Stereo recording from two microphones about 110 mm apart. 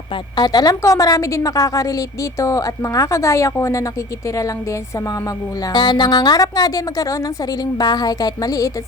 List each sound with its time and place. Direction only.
0.3 s a woman's voice: 40° left (ahead or behind)
5.7 s speech: 45° left (ahead or behind)